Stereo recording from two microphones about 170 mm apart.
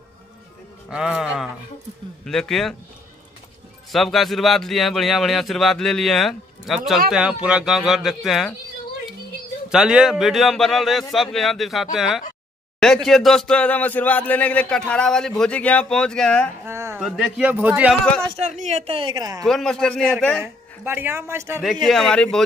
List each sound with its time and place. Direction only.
0.8 s a man's voice: 5° right (ahead or behind)
3.9 s a man's voice: centre (ahead or behind)
9.7 s a man's voice: 5° right (ahead or behind)
16.6 s a sound: 15° right (ahead or behind)
17.0 s a man's voice: centre (ahead or behind)
18.4 s a woman's voice: 40° right (ahead or behind); by 19.4 s 20° right (ahead or behind)
19.4 s a man's voice: 5° left (ahead or behind)
20.8 s a man's voice: 10° right (ahead or behind)
21.8 s a man's voice: centre (ahead or behind)